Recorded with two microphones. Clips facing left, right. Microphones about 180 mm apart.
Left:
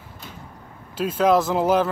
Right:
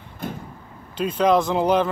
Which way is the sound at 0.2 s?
55° right (ahead or behind).